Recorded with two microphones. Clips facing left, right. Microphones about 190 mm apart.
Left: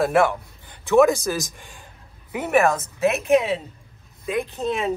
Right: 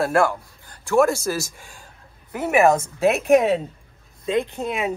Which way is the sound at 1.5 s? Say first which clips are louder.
Even; centre (ahead or behind).